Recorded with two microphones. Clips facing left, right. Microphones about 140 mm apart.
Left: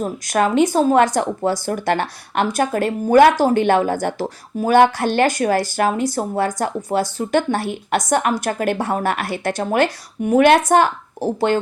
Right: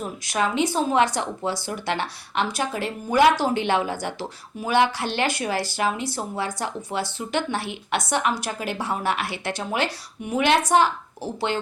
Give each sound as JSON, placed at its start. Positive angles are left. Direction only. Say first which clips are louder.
{"t": 0.0, "sound": "speech", "louder": "left 6 dB", "side_deg": 45}